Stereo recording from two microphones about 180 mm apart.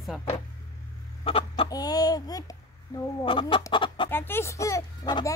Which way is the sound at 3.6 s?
25° left (ahead or behind).